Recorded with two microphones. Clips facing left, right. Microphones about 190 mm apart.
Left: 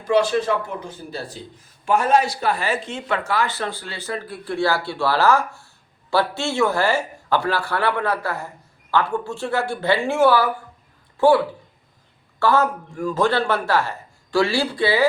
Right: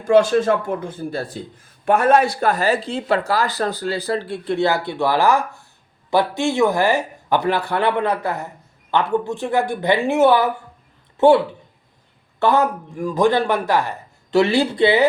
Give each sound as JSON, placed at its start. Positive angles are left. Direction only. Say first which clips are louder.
{"t": 0.0, "sound": "a man's voice", "louder": "right 4 dB", "side_deg": -50}